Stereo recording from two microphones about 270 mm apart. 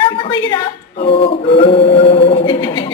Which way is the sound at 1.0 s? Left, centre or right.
Centre.